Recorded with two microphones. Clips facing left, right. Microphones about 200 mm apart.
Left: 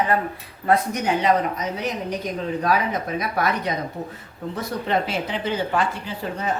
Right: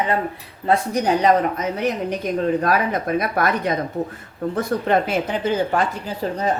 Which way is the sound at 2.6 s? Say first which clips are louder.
Right 2 dB; 55° right (ahead or behind).